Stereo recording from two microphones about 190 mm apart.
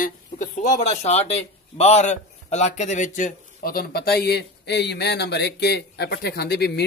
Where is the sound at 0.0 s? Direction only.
40° left (ahead or behind).